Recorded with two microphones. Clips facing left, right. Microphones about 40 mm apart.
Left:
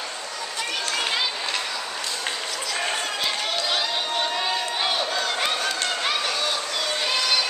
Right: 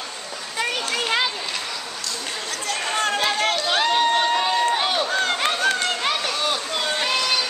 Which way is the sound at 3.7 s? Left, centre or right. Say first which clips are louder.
Right 7 dB; right.